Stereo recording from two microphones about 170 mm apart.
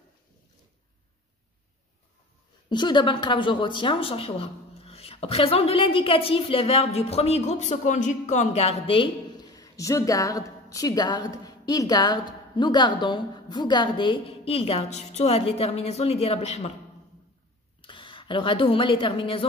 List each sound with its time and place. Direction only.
2.7 s a woman's voice: 25° left (ahead or behind)
17.8 s a woman's voice: 30° left (ahead or behind)